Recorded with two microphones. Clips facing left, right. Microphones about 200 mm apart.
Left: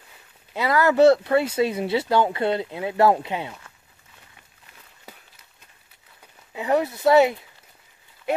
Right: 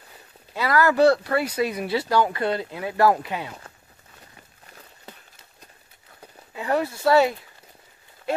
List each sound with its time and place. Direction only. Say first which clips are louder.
0.6 s speech: left 2 dB; 20° left (ahead or behind)
5.1 s run: right 1 dB; 10° left (ahead or behind)
6.5 s speech: left 2 dB; 20° left (ahead or behind)